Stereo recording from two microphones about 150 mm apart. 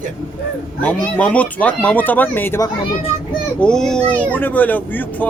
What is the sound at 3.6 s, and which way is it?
Speech, 5° left (ahead or behind).